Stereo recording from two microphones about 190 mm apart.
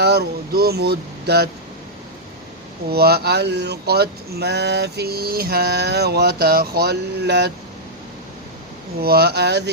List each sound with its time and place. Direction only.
0.0 s speech: 55° right (ahead or behind)
2.9 s speech: 55° right (ahead or behind)
9.0 s speech: 55° right (ahead or behind)